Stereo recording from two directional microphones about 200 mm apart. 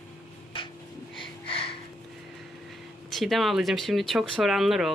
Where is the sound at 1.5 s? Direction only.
25° left (ahead or behind).